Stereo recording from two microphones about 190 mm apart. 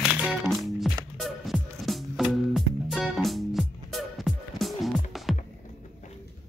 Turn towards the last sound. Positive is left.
turn(degrees=0)  # may be behind; listen again after turning